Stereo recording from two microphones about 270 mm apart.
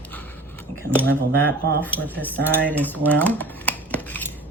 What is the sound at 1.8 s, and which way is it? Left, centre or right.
Speech, centre.